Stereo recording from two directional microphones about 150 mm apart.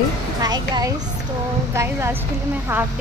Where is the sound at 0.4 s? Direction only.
25° right (ahead or behind).